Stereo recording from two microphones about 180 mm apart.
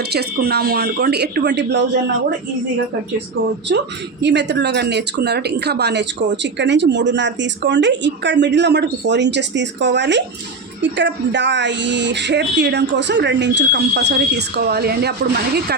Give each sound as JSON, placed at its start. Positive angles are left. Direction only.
{"t": 0.0, "sound": "speech", "side_deg": -65}
{"t": 4.2, "sound": "speech", "side_deg": -75}
{"t": 6.3, "sound": "speech", "side_deg": -80}